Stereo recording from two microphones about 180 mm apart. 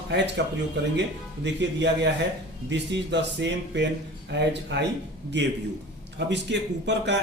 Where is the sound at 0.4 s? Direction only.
70° right (ahead or behind).